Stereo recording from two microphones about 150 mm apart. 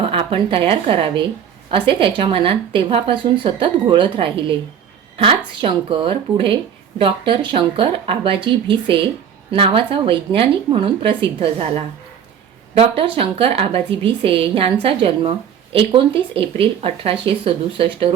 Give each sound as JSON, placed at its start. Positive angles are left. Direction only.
{"t": 0.0, "sound": "a woman's voice", "side_deg": -35}
{"t": 12.7, "sound": "a woman's voice", "side_deg": -40}